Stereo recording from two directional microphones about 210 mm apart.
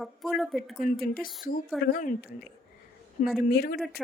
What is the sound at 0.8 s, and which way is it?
Speech, 40° left (ahead or behind).